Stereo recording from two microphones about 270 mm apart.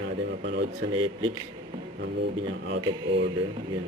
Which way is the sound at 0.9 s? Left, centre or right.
Centre.